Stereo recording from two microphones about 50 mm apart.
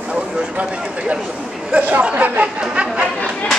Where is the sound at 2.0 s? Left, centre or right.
Right.